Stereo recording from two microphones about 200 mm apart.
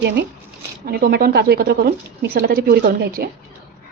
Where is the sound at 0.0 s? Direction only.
55° right (ahead or behind).